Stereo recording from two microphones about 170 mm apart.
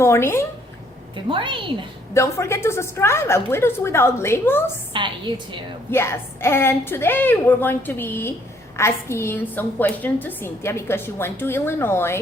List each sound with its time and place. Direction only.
0.0 s a woman's voice: 15° left (ahead or behind)
1.1 s a woman's voice: 30° right (ahead or behind)
2.1 s a woman's voice: 15° left (ahead or behind)
4.9 s a woman's voice: 30° right (ahead or behind)
5.9 s a woman's voice: 15° left (ahead or behind)